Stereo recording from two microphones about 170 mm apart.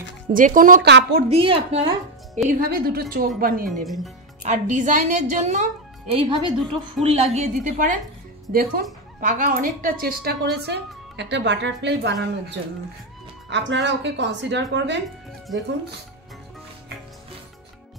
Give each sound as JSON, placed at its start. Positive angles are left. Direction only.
{"t": 0.3, "sound": "a woman's voice", "side_deg": -55}
{"t": 0.8, "sound": "speech", "side_deg": -85}
{"t": 1.3, "sound": "a woman's voice", "side_deg": -35}
{"t": 2.6, "sound": "a woman's voice", "side_deg": -65}
{"t": 3.8, "sound": "speech", "side_deg": 0}
{"t": 4.4, "sound": "a woman's voice", "side_deg": -45}
{"t": 8.5, "sound": "a woman's voice", "side_deg": -60}